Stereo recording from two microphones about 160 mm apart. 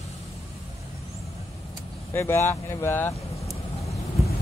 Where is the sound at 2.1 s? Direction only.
15° left (ahead or behind).